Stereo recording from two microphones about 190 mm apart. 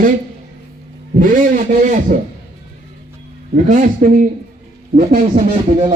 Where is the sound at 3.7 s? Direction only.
45° right (ahead or behind).